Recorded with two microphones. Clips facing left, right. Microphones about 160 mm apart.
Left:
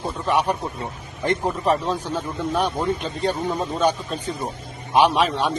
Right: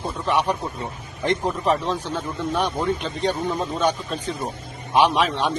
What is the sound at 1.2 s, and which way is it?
A man's voice, 5° left (ahead or behind).